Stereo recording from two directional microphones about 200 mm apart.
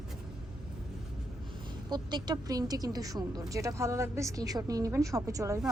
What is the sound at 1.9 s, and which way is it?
Speech, 20° right (ahead or behind).